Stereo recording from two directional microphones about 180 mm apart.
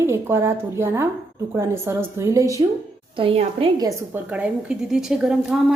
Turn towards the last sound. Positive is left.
turn(degrees=-5)  # may be behind; listen again after turning